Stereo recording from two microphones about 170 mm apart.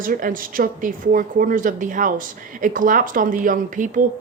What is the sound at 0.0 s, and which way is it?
A woman's voice, 55° right (ahead or behind).